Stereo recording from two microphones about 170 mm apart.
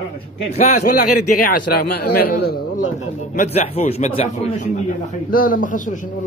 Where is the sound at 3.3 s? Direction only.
45° left (ahead or behind).